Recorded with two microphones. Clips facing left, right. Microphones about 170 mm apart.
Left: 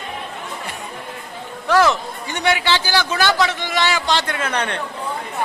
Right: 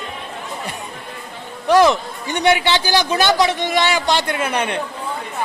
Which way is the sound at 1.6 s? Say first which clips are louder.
Right 3 dB; 15° right (ahead or behind).